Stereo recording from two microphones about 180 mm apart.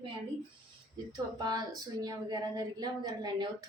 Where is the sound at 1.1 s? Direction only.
20° right (ahead or behind).